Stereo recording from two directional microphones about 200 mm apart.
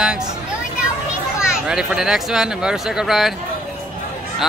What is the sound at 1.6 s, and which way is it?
A man's voice, 5° right (ahead or behind).